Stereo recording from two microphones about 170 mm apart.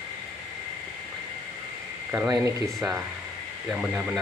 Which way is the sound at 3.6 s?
5° right (ahead or behind).